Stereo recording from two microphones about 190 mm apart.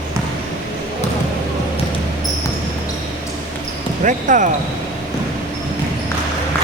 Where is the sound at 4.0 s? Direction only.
45° right (ahead or behind).